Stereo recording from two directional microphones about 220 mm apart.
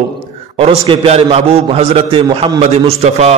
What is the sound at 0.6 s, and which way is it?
A man's voice, 25° right (ahead or behind).